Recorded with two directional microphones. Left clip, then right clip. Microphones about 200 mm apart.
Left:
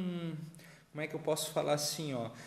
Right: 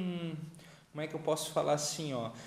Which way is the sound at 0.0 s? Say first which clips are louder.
Right 1 dB; 25° left (ahead or behind).